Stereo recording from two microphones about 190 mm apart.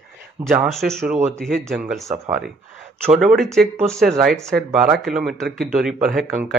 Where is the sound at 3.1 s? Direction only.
Centre (ahead or behind).